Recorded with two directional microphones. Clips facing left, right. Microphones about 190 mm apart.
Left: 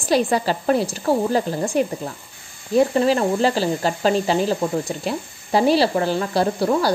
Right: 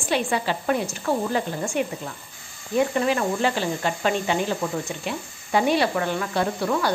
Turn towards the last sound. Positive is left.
turn(degrees=35)  # may be behind; listen again after turning